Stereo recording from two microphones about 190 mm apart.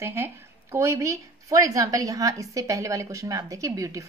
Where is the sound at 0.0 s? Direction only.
10° right (ahead or behind).